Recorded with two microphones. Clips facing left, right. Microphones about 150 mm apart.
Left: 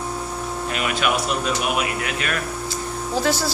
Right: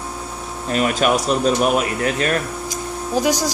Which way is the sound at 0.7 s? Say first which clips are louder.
Right 6 dB; 40° right (ahead or behind).